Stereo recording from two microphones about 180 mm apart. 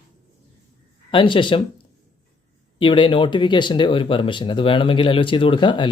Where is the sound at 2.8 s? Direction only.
25° left (ahead or behind).